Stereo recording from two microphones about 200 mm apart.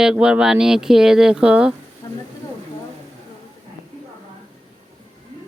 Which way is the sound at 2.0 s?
20° left (ahead or behind).